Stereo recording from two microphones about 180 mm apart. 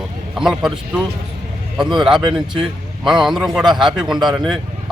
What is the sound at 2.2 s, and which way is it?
Speech, 25° right (ahead or behind).